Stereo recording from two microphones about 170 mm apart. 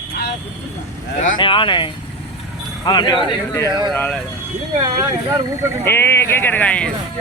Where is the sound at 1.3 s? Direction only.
30° left (ahead or behind).